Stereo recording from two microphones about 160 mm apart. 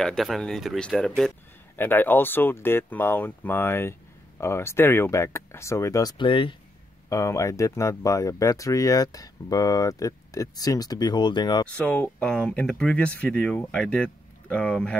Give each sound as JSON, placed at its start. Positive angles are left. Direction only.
{"t": 0.0, "sound": "speech", "side_deg": 0}
{"t": 7.1, "sound": "speech", "side_deg": 20}
{"t": 11.8, "sound": "speech", "side_deg": 5}